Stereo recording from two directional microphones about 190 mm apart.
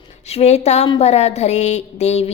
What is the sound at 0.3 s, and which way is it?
A woman's voice, 35° left (ahead or behind).